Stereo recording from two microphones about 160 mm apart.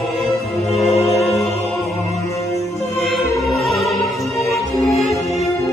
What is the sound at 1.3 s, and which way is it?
Music, 40° left (ahead or behind).